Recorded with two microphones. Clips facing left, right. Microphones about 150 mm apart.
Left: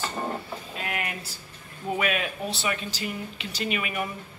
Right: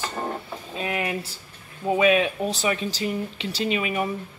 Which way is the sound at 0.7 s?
25° right (ahead or behind).